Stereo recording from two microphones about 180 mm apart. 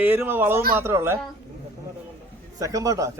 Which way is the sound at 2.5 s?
20° right (ahead or behind).